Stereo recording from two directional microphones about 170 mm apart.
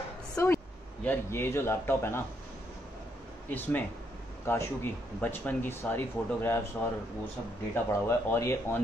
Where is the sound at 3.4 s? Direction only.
10° left (ahead or behind).